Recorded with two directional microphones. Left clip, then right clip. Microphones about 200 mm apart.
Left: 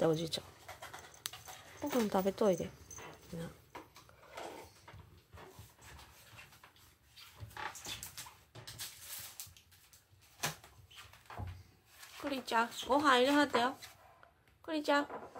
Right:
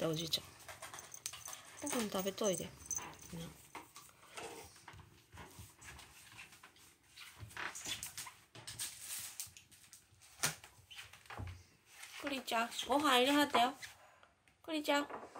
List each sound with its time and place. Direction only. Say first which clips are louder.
0.0 s speech: left 5 dB; 5° left (ahead or behind)
1.8 s speech: left 6 dB; centre (ahead or behind)
12.2 s speech: left 4 dB; centre (ahead or behind)